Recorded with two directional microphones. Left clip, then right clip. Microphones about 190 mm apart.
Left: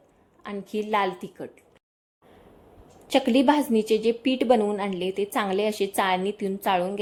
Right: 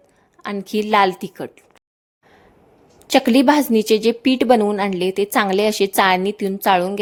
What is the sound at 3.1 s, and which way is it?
A woman's voice, 35° right (ahead or behind).